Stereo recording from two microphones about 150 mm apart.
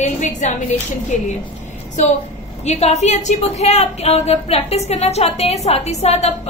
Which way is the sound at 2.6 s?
45° left (ahead or behind).